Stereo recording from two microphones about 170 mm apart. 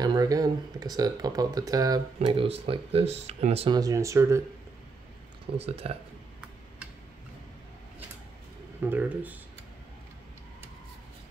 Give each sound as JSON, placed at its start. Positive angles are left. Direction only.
{"t": 0.0, "sound": "speech", "side_deg": -20}
{"t": 2.2, "sound": "speech", "side_deg": -35}
{"t": 3.7, "sound": "speech", "side_deg": -20}
{"t": 5.6, "sound": "speech", "side_deg": -35}
{"t": 8.8, "sound": "speech", "side_deg": -10}